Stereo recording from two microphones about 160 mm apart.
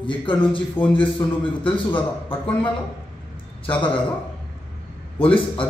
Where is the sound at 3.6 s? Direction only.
30° left (ahead or behind).